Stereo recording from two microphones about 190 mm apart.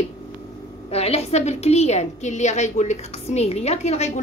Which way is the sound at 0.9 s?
35° left (ahead or behind).